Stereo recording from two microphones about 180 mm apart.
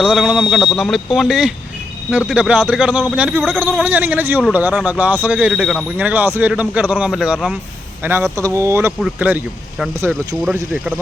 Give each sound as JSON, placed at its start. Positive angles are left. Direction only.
{"t": 0.0, "sound": "speech", "side_deg": -5}
{"t": 8.0, "sound": "speech", "side_deg": -15}